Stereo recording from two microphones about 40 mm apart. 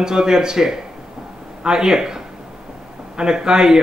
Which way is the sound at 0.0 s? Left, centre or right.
Centre.